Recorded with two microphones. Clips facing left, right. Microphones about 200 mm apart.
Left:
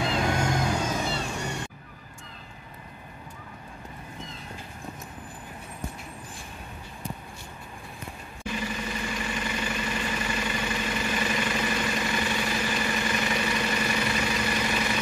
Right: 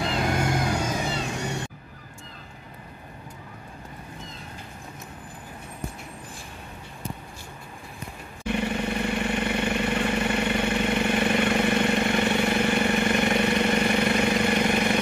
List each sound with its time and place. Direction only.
0.0 s vehicle: 5° right (ahead or behind)
8.5 s vehicle: 65° right (ahead or behind)